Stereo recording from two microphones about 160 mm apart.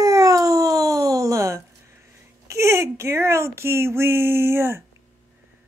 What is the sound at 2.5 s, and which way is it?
Speech, 15° right (ahead or behind).